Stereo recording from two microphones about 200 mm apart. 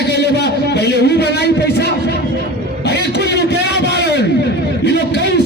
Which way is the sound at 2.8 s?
55° left (ahead or behind).